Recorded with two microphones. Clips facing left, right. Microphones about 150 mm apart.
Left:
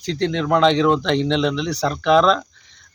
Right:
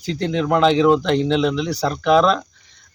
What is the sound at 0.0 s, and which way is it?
Speech, 5° right (ahead or behind).